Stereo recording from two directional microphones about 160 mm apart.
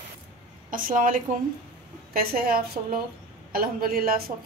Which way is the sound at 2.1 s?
70° right (ahead or behind).